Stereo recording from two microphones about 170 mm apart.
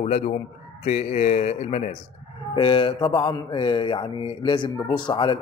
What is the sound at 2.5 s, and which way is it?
Speech, 30° left (ahead or behind).